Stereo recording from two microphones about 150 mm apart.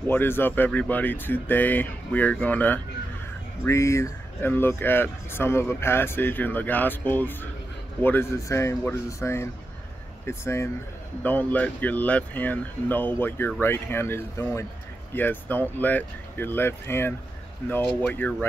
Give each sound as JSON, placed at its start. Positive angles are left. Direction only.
{"t": 0.0, "sound": "speech", "side_deg": 15}